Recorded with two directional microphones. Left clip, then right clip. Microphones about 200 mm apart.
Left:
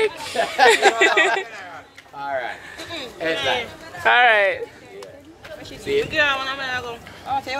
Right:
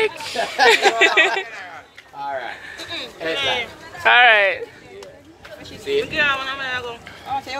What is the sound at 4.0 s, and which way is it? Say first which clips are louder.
Speech: right 2 dB; 10° left (ahead or behind).